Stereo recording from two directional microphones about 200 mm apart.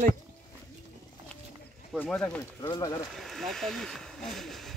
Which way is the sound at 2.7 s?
20° left (ahead or behind).